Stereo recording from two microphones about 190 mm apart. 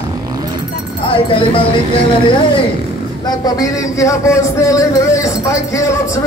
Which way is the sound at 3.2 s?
20° left (ahead or behind).